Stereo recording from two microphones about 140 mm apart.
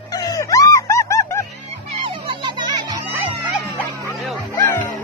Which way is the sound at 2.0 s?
40° right (ahead or behind).